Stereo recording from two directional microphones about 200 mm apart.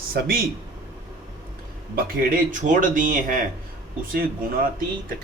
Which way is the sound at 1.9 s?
45° right (ahead or behind).